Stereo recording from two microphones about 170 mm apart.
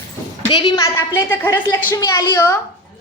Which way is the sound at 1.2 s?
15° left (ahead or behind).